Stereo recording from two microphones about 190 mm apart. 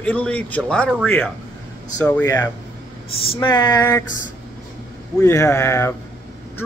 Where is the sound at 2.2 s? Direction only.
20° left (ahead or behind).